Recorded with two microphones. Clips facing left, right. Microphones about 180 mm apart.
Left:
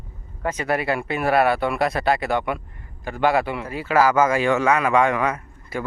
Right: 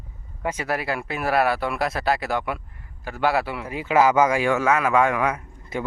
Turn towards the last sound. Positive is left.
turn(degrees=-20)  # may be behind; listen again after turning